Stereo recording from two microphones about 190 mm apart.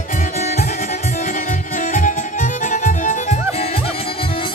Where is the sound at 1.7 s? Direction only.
40° left (ahead or behind).